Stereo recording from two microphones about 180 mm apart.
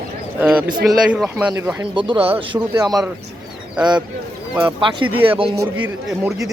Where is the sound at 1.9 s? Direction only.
30° right (ahead or behind).